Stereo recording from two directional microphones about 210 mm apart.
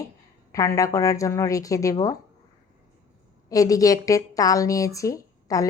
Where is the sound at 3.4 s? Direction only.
15° left (ahead or behind).